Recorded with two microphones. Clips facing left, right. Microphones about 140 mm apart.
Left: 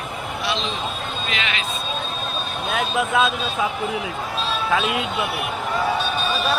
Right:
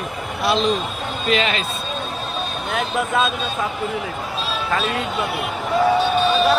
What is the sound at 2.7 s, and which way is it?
Speech, centre (ahead or behind).